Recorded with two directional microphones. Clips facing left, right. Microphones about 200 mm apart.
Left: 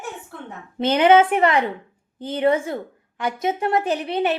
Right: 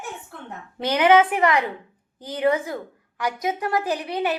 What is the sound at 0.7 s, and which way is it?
A woman's voice, 25° left (ahead or behind).